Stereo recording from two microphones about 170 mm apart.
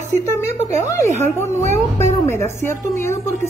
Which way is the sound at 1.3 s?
15° left (ahead or behind).